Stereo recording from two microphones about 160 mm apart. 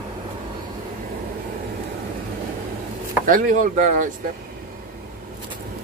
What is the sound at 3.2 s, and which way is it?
Speech, 55° right (ahead or behind).